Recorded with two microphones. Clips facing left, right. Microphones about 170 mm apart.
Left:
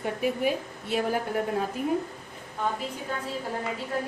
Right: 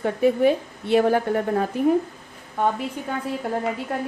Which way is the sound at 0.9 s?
60° right (ahead or behind).